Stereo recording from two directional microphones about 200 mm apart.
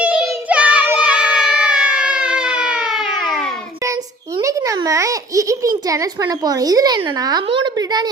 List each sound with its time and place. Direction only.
0.0 s child singing: 5° right (ahead or behind)
4.4 s a child's voice: 15° right (ahead or behind)